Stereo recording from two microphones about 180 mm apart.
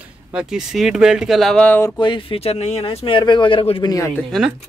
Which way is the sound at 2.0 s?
30° left (ahead or behind).